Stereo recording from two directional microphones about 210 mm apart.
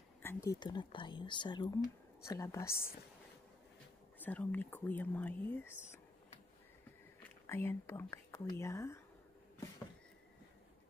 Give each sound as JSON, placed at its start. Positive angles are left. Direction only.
{"t": 0.2, "sound": "speech", "side_deg": 10}
{"t": 4.2, "sound": "speech", "side_deg": 10}
{"t": 7.4, "sound": "speech", "side_deg": 10}